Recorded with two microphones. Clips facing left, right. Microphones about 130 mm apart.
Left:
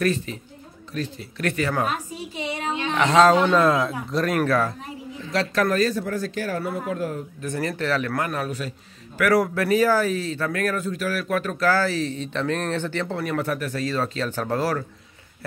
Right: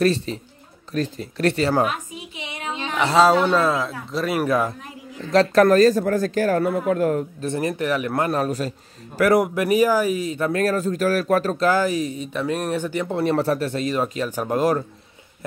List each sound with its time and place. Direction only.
0.0 s a man's voice: 30° right (ahead or behind)
1.9 s a sound: 35° left (ahead or behind)
2.7 s a sound: 20° right (ahead or behind)
3.0 s speech: 5° right (ahead or behind)
5.3 s a man's voice: 45° right (ahead or behind)
7.4 s speech: 20° right (ahead or behind)
8.1 s a man's voice: 30° right (ahead or behind)
9.2 s speech: 20° right (ahead or behind)
10.5 s a man's voice: 30° right (ahead or behind)
11.6 s speech: 15° right (ahead or behind)
13.2 s speech: 30° right (ahead or behind)